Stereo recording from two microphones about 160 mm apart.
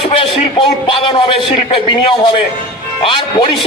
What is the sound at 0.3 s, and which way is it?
A man's voice, 35° left (ahead or behind).